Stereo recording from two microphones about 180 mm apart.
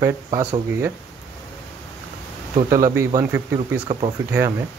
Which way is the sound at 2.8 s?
15° right (ahead or behind).